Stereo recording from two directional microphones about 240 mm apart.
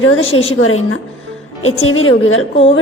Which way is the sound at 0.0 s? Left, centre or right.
Left.